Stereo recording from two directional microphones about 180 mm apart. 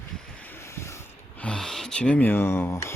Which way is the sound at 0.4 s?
10° left (ahead or behind).